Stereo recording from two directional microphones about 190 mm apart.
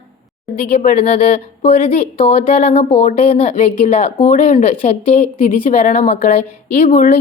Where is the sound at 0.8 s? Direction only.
35° left (ahead or behind).